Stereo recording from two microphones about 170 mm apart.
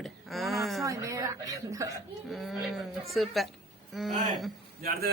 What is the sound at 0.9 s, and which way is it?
A woman's voice, 20° right (ahead or behind).